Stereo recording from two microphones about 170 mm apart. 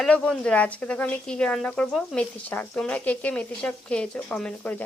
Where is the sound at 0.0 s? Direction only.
5° left (ahead or behind).